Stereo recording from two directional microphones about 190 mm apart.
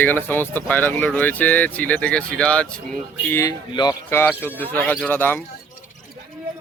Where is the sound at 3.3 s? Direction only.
15° left (ahead or behind).